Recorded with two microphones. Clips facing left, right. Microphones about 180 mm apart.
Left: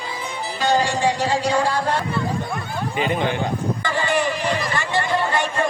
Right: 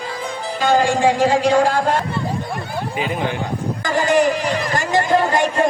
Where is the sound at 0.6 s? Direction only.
50° right (ahead or behind).